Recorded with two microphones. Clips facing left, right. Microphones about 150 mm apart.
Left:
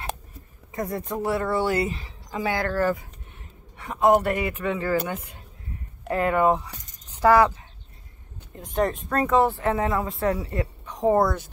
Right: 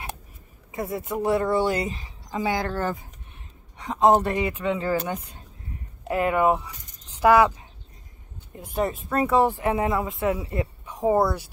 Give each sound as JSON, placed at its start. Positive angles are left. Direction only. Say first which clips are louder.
{"t": 0.7, "sound": "speech", "louder": "even", "side_deg": -5}
{"t": 1.2, "sound": "speech", "louder": "right 3 dB", "side_deg": -20}
{"t": 8.5, "sound": "speech", "louder": "left 2 dB", "side_deg": -10}
{"t": 10.0, "sound": "speech", "louder": "even", "side_deg": 0}
{"t": 10.3, "sound": "speech", "louder": "even", "side_deg": -10}